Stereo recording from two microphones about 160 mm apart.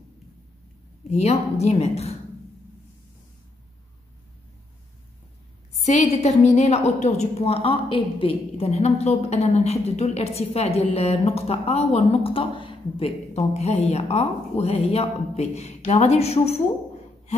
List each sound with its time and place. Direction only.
1.1 s a woman's voice: 40° left (ahead or behind)
5.8 s a woman's voice: 45° left (ahead or behind)